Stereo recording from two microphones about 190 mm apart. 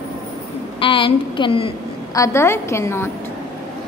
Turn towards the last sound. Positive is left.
turn(degrees=15)  # may be behind; listen again after turning